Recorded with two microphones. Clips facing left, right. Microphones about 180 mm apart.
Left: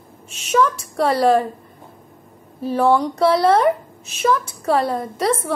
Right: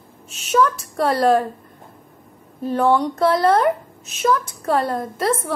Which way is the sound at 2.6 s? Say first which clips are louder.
Left 1 dB; centre (ahead or behind).